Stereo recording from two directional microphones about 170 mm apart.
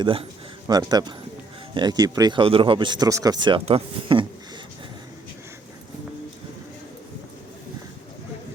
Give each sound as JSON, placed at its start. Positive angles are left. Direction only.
{"t": 0.0, "sound": "speech", "side_deg": -30}